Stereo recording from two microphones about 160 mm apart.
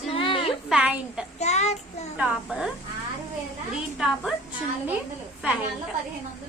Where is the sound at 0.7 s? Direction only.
10° right (ahead or behind).